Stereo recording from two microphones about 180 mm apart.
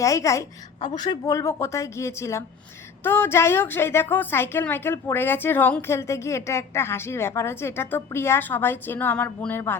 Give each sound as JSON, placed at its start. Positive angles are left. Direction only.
{"t": 0.0, "sound": "a woman's voice", "side_deg": 15}